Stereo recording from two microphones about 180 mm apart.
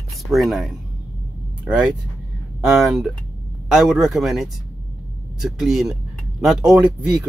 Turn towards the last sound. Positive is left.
turn(degrees=-5)  # may be behind; listen again after turning